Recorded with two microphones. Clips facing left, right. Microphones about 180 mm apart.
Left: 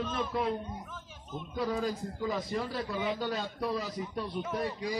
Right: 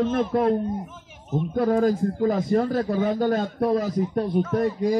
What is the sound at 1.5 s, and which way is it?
A man's voice, 55° right (ahead or behind).